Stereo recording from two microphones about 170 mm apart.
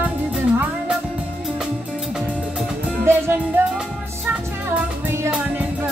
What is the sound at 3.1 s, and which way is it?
Music, 10° right (ahead or behind).